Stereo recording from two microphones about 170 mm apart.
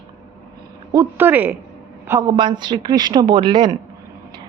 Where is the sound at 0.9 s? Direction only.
10° right (ahead or behind).